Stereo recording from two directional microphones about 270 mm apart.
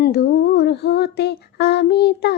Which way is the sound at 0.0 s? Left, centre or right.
Left.